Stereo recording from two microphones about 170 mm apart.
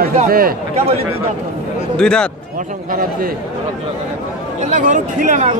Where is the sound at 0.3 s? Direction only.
60° right (ahead or behind).